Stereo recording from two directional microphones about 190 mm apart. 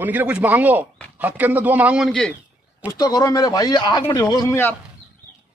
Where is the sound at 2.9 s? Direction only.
20° left (ahead or behind).